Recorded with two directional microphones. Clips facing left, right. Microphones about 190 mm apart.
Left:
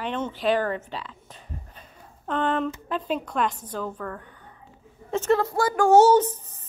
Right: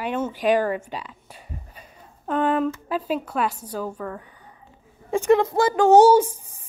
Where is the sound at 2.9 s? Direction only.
5° right (ahead or behind).